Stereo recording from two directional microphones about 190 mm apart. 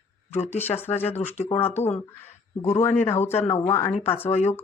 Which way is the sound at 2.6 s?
35° left (ahead or behind).